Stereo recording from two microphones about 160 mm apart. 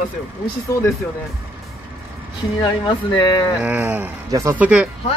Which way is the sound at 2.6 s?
25° left (ahead or behind).